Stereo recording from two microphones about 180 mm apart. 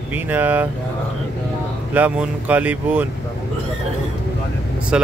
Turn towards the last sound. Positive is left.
turn(degrees=-5)  # may be behind; listen again after turning